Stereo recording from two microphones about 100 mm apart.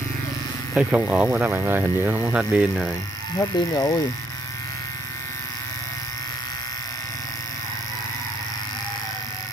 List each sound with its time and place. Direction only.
0.7 s speech: 15° right (ahead or behind)
3.3 s speech: 40° left (ahead or behind)